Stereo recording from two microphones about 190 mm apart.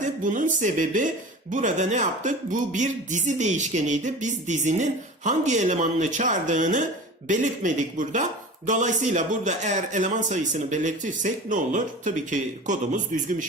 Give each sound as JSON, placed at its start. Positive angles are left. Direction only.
{"t": 0.0, "sound": "speech", "side_deg": -45}